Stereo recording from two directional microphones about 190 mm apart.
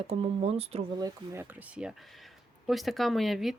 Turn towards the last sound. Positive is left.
turn(degrees=0)  # may be behind; listen again after turning